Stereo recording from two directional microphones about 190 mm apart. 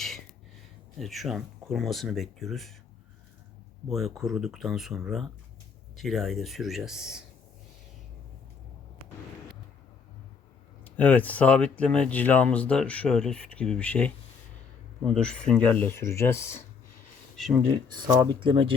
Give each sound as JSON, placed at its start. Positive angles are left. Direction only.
{"t": 0.9, "sound": "speech", "side_deg": 0}
{"t": 3.8, "sound": "speech", "side_deg": 0}
{"t": 10.8, "sound": "speech", "side_deg": 10}
{"t": 17.3, "sound": "speech", "side_deg": 0}
{"t": 17.9, "sound": "speech", "side_deg": -20}